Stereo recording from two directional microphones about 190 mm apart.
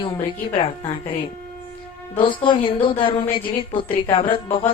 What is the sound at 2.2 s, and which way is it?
A woman's voice, 25° left (ahead or behind).